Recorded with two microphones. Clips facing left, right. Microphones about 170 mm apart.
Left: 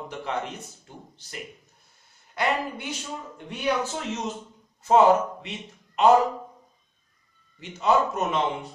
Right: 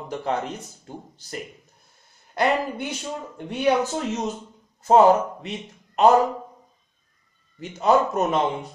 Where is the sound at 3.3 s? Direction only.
40° right (ahead or behind).